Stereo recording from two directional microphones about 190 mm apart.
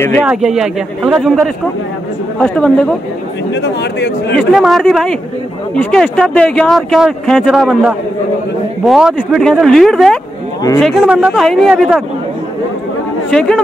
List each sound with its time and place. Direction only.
0.3 s speech: 5° right (ahead or behind)
3.6 s speech: 65° left (ahead or behind)
4.4 s speech: centre (ahead or behind)
13.3 s speech: 5° left (ahead or behind)